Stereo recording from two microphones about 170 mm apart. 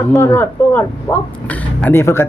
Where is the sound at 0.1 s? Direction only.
15° left (ahead or behind).